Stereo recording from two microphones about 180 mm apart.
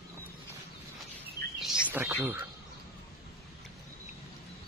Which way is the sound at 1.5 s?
5° right (ahead or behind).